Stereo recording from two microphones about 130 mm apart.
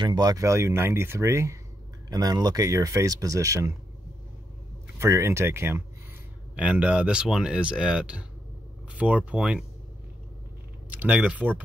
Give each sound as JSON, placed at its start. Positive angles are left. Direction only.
{"t": 0.0, "sound": "speech", "side_deg": -35}
{"t": 4.9, "sound": "speech", "side_deg": -20}
{"t": 6.5, "sound": "speech", "side_deg": -10}
{"t": 10.9, "sound": "speech", "side_deg": -10}